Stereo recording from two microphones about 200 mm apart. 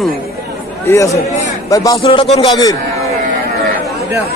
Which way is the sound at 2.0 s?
25° left (ahead or behind).